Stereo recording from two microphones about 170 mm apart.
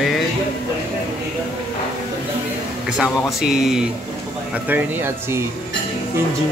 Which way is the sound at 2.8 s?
5° right (ahead or behind).